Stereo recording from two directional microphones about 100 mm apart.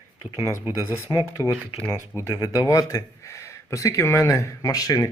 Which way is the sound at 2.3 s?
40° left (ahead or behind).